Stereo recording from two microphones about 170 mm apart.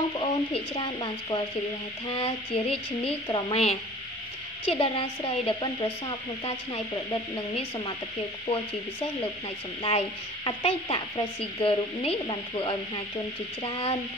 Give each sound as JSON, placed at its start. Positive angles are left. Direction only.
{"t": 0.1, "sound": "speech", "side_deg": 35}
{"t": 4.6, "sound": "speech", "side_deg": 30}
{"t": 9.8, "sound": "speech", "side_deg": 35}